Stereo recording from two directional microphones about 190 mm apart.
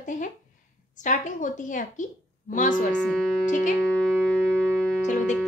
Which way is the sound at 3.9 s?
5° left (ahead or behind).